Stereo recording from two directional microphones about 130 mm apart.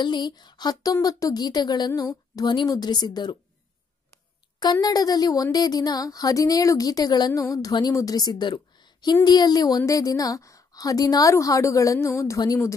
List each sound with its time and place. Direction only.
0.0 s a woman's voice: 35° left (ahead or behind)
4.8 s speech: 30° left (ahead or behind)